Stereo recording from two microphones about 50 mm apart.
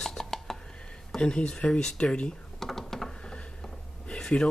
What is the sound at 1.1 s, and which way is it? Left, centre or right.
Speech, centre.